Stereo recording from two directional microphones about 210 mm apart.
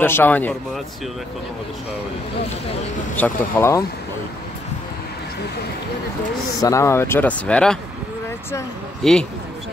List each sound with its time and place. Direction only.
0.0 s speech: 10° left (ahead or behind)
3.2 s speech: 10° left (ahead or behind)
6.6 s speech: 15° left (ahead or behind)
9.0 s speech: centre (ahead or behind)